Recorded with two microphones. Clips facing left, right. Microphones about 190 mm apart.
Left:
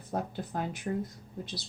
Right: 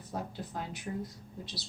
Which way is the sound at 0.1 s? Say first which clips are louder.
Left 5 dB; 55° left (ahead or behind).